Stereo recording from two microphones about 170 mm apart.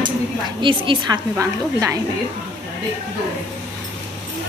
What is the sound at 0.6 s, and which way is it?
A woman's voice, 30° right (ahead or behind).